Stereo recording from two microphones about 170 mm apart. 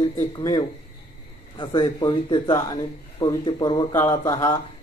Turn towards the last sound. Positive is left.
turn(degrees=20)  # may be behind; listen again after turning